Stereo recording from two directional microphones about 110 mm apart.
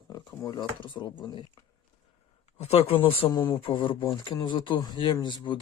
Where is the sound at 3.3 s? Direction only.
40° left (ahead or behind).